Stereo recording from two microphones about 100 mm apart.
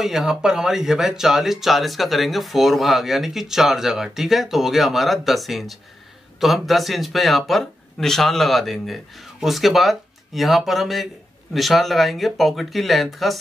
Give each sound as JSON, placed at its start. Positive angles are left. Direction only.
{"t": 0.0, "sound": "speech", "side_deg": -5}